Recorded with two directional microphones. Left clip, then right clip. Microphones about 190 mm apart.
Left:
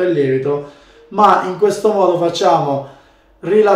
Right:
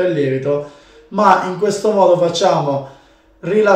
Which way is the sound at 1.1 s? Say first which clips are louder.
Left 1 dB; 10° left (ahead or behind).